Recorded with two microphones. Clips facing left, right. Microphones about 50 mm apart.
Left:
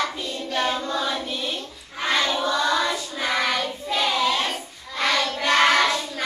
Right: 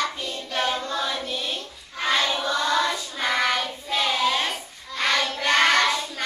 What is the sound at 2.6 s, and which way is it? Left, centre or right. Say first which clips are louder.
Child singing: left 1 dB; centre.